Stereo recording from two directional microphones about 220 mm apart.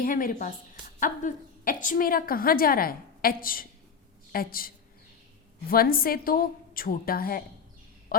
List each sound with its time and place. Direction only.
0.0 s a woman's voice: 40° left (ahead or behind)
5.7 s a woman's voice: 40° left (ahead or behind)
8.1 s a sound: 40° left (ahead or behind)